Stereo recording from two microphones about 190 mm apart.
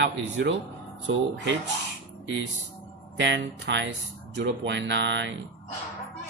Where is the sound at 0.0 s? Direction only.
70° right (ahead or behind).